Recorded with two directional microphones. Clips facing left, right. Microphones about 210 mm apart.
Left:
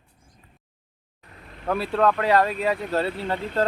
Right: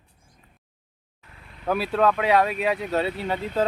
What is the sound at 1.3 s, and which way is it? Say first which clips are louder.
Vehicle: left 4 dB; 40° left (ahead or behind).